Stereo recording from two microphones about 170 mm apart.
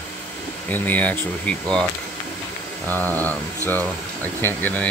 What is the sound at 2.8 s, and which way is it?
Speech, 10° left (ahead or behind).